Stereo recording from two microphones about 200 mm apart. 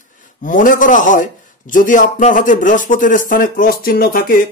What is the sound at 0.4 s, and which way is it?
A man's voice, 40° left (ahead or behind).